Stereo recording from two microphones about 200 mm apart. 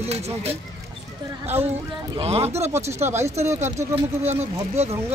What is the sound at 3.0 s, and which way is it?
Speech, 10° right (ahead or behind).